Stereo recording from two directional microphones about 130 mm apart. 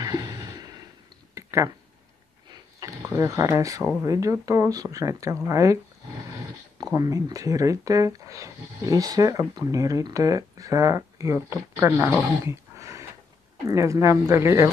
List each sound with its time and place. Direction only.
0.0 s a sound: 25° right (ahead or behind)
2.5 s speech: 25° right (ahead or behind)
6.8 s speech: 25° right (ahead or behind)